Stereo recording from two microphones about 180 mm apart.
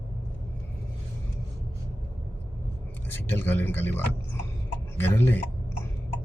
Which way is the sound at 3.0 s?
10° left (ahead or behind).